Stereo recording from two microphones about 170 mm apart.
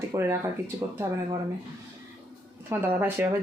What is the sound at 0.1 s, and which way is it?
Speech, 20° right (ahead or behind).